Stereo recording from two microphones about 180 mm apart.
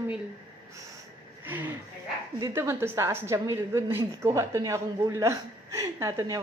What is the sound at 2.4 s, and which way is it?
A woman's voice, 15° right (ahead or behind).